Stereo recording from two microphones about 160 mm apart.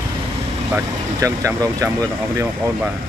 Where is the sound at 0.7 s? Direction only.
20° right (ahead or behind).